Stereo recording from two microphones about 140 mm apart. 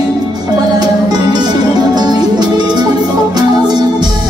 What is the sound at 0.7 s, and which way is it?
Music, 30° right (ahead or behind).